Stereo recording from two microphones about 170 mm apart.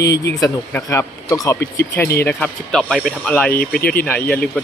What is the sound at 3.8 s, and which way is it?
Speech, 60° left (ahead or behind).